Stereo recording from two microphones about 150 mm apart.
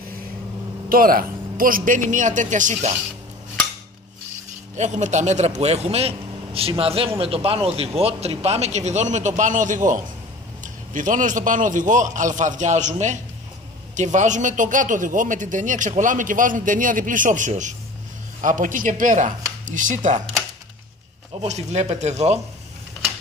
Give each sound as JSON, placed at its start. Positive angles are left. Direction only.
{"t": 0.8, "sound": "speech", "side_deg": -75}
{"t": 4.7, "sound": "speech", "side_deg": -50}
{"t": 21.4, "sound": "speech", "side_deg": -50}